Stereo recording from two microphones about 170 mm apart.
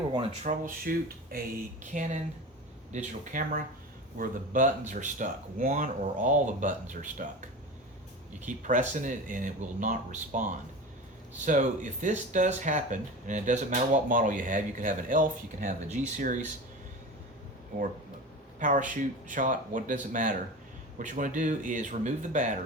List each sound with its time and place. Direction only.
0.1 s speech: 35° right (ahead or behind)
0.4 s speech: 55° right (ahead or behind)
1.8 s speech: 50° right (ahead or behind)
8.4 s speech: 50° right (ahead or behind)
18.6 s speech: 50° right (ahead or behind)